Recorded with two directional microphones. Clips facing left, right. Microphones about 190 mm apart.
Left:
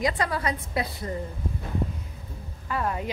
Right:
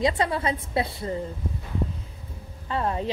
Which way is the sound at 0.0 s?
25° right (ahead or behind).